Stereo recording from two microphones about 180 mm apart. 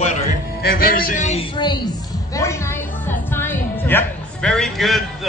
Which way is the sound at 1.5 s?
25° left (ahead or behind).